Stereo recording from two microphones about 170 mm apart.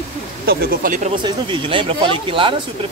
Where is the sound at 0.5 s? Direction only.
60° right (ahead or behind).